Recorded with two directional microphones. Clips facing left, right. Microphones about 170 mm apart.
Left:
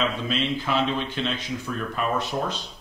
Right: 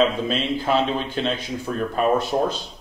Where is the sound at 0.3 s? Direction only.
35° right (ahead or behind).